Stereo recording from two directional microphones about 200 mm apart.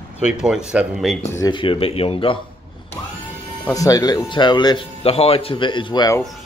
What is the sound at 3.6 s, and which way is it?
Speech, 15° left (ahead or behind).